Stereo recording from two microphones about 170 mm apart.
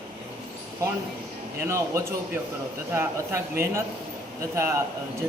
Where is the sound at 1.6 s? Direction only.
15° right (ahead or behind).